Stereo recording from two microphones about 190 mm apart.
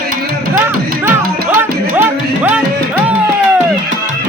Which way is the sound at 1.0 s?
10° right (ahead or behind).